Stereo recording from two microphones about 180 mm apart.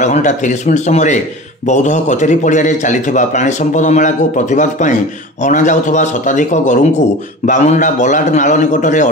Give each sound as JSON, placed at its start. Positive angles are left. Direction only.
{"t": 0.0, "sound": "a man's voice", "side_deg": 40}